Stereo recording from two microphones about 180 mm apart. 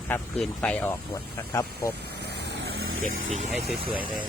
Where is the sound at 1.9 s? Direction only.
65° right (ahead or behind).